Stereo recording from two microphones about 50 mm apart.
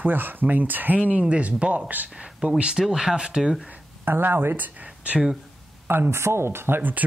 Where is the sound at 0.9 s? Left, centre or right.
Right.